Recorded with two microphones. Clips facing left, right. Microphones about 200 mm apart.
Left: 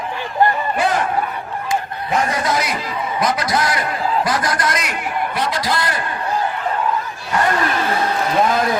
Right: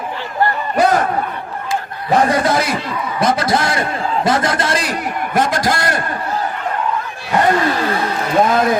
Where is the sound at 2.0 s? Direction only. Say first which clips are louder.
Right 6 dB; 35° right (ahead or behind).